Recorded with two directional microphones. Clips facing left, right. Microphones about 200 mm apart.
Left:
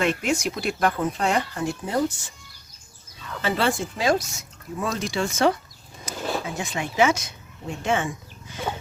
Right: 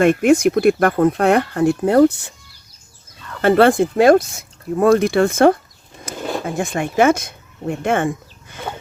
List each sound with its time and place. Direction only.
0.0 s speech: 55° right (ahead or behind)
3.4 s speech: 55° right (ahead or behind)
6.1 s a sound: 50° right (ahead or behind)
6.4 s speech: 50° right (ahead or behind)